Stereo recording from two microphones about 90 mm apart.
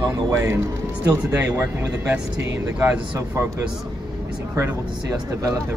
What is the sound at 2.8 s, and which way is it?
Speech, 35° right (ahead or behind).